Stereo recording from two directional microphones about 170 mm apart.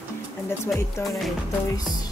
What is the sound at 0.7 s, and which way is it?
Music, centre (ahead or behind).